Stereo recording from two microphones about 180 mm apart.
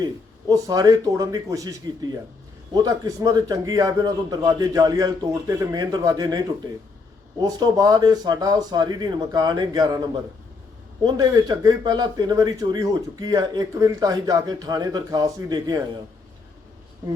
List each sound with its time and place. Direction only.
0.0 s speech: 20° right (ahead or behind)